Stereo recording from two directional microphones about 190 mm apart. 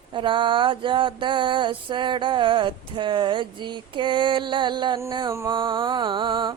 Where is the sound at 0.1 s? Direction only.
25° right (ahead or behind).